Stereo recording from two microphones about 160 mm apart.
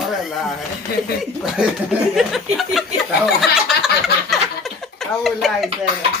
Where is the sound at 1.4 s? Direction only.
5° right (ahead or behind).